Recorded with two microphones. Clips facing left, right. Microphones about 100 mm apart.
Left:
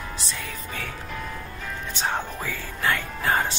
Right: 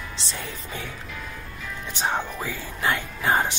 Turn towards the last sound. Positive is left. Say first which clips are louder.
# right 1 dB
turn(degrees=-20)  # may be behind; listen again after turning